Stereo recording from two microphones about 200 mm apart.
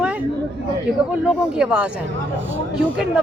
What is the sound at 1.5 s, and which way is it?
Speech, 5° right (ahead or behind).